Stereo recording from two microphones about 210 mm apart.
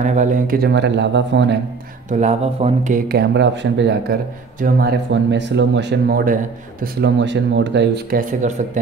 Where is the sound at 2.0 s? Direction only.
35° right (ahead or behind).